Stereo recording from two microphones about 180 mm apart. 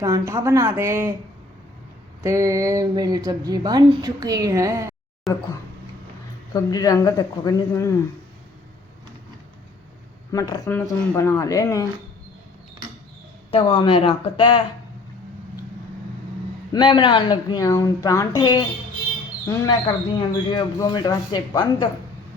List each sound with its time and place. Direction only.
0.0 s speech: 15° right (ahead or behind)
2.2 s a woman's voice: 15° right (ahead or behind)
5.3 s speech: centre (ahead or behind)
6.5 s speech: 20° left (ahead or behind)
10.3 s speech: 20° left (ahead or behind)
10.7 s speech: 10° left (ahead or behind)
13.5 s speech: 30° left (ahead or behind)
16.7 s speech: 25° left (ahead or behind)